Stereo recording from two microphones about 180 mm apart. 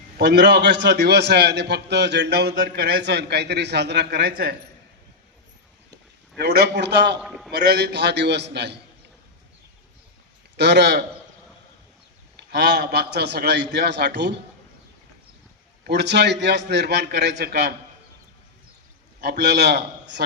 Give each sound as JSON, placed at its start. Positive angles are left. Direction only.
{"t": 0.2, "sound": "a man's voice", "side_deg": -70}
{"t": 6.4, "sound": "a man's voice", "side_deg": -70}
{"t": 7.2, "sound": "a man's voice", "side_deg": 0}
{"t": 7.5, "sound": "a man's voice", "side_deg": -65}
{"t": 10.6, "sound": "a man's voice", "side_deg": -70}
{"t": 12.4, "sound": "a man's voice", "side_deg": -65}
{"t": 15.9, "sound": "a man's voice", "side_deg": -70}
{"t": 19.5, "sound": "a man's voice", "side_deg": -65}